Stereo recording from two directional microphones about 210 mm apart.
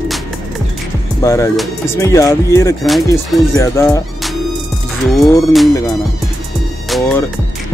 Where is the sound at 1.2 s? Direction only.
15° left (ahead or behind).